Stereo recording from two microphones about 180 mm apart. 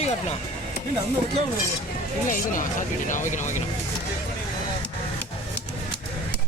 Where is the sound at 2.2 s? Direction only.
50° left (ahead or behind).